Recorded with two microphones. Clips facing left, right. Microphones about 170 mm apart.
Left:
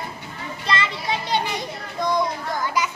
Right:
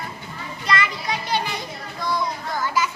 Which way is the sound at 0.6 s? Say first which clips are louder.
Right 1 dB; 25° left (ahead or behind).